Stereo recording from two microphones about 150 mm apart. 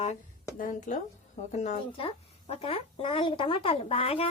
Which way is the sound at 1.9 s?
40° left (ahead or behind).